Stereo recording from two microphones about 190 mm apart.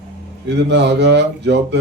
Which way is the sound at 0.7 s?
65° right (ahead or behind).